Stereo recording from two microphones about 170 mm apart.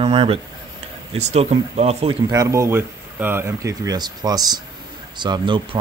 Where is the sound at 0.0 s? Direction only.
35° right (ahead or behind).